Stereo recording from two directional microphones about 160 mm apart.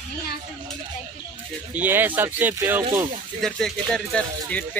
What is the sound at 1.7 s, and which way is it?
Speech, 10° right (ahead or behind).